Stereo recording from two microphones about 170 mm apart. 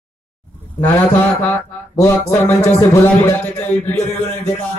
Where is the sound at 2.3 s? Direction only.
15° left (ahead or behind).